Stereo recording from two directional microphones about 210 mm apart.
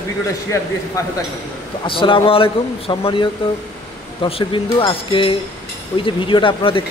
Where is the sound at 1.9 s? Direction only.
25° left (ahead or behind).